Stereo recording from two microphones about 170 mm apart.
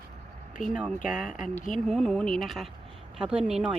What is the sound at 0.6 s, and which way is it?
Speech, centre (ahead or behind).